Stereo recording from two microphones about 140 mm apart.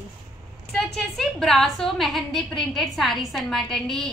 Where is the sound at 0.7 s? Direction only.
Centre (ahead or behind).